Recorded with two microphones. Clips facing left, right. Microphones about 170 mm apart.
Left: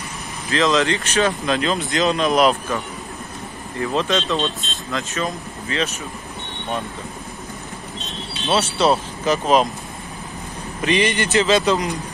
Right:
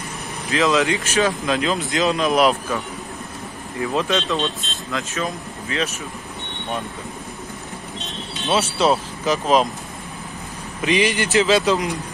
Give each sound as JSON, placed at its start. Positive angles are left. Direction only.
{"t": 0.5, "sound": "speech", "side_deg": -10}
{"t": 3.8, "sound": "speech", "side_deg": -5}
{"t": 8.5, "sound": "speech", "side_deg": -5}
{"t": 10.8, "sound": "speech", "side_deg": -5}